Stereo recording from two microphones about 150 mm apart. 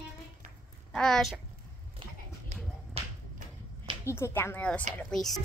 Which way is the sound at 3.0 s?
40° right (ahead or behind).